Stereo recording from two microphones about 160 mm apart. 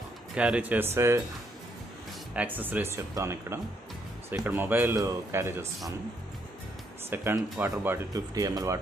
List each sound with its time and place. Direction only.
0.3 s speech: 5° right (ahead or behind)
2.3 s speech: 10° right (ahead or behind)
7.1 s speech: 15° right (ahead or behind)